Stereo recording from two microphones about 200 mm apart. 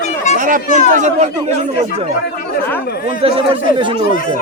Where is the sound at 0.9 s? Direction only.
35° right (ahead or behind).